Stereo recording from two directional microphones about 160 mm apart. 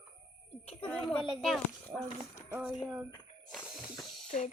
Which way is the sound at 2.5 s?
5° right (ahead or behind).